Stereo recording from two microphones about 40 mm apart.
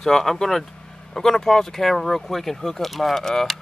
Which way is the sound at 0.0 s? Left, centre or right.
Centre.